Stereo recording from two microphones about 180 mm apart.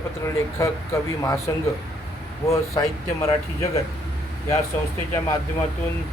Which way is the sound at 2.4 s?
15° left (ahead or behind).